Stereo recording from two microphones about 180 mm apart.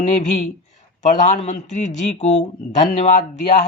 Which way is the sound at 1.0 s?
40° left (ahead or behind).